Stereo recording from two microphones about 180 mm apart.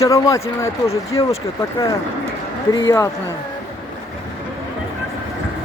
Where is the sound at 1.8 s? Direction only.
20° left (ahead or behind).